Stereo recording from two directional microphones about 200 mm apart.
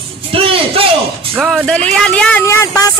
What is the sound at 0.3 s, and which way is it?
Music, 25° right (ahead or behind).